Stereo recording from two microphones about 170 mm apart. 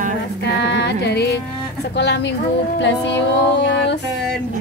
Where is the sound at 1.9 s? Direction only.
90° left.